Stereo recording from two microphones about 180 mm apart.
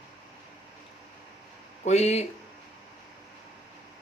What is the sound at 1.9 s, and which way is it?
Speech, 35° left (ahead or behind).